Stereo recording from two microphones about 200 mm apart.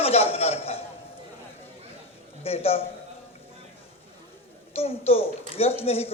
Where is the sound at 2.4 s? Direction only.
30° left (ahead or behind).